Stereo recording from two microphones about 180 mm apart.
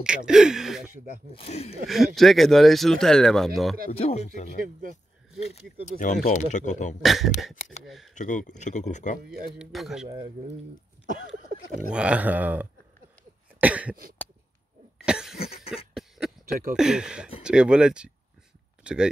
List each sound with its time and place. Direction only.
0.0 s speech: 5° right (ahead or behind)
1.3 s speech: 35° left (ahead or behind)
1.9 s speech: centre (ahead or behind)
3.9 s speech: 35° left (ahead or behind)
5.9 s speech: 45° left (ahead or behind)
7.0 s speech: centre (ahead or behind)
8.1 s speech: 45° left (ahead or behind)
9.6 s speech: centre (ahead or behind)
11.9 s speech: 5° right (ahead or behind)
13.6 s cough: 10° right (ahead or behind)
15.0 s cough: 5° right (ahead or behind)
15.3 s cough: 35° left (ahead or behind)
15.9 s a sound: centre (ahead or behind)
16.7 s speech: 5° right (ahead or behind)